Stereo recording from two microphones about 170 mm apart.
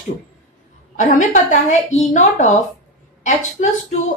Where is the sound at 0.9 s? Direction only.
45° left (ahead or behind).